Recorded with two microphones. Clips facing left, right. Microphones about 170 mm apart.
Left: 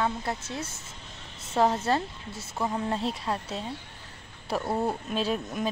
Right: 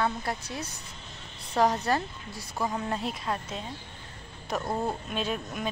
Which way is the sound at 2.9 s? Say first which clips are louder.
Left 2 dB; 30° left (ahead or behind).